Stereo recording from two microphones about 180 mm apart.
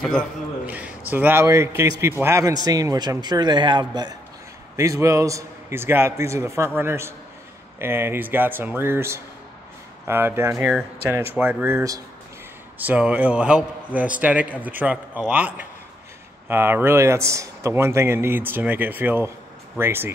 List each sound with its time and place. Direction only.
0.7 s a man's voice: 10° right (ahead or behind)